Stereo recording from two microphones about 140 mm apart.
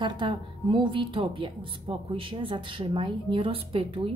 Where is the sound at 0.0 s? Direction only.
35° right (ahead or behind).